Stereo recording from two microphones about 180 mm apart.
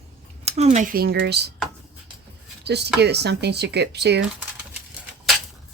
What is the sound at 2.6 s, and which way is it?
Speech, 70° right (ahead or behind).